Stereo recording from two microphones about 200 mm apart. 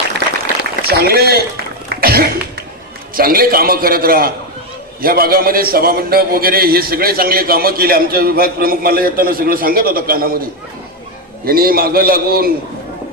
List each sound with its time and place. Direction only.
0.9 s a man's voice: 50° right (ahead or behind)
1.9 s cough: 50° right (ahead or behind)
3.2 s a man's voice: 45° right (ahead or behind)
11.4 s a man's voice: 50° right (ahead or behind)